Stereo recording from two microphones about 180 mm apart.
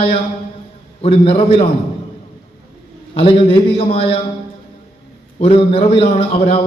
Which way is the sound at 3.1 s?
30° left (ahead or behind).